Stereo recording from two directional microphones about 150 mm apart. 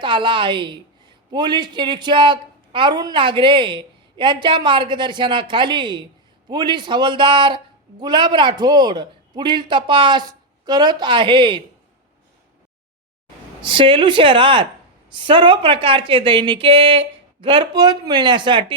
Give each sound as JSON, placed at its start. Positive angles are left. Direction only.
{"t": 0.0, "sound": "a woman's voice", "side_deg": -35}
{"t": 13.6, "sound": "a woman's voice", "side_deg": -35}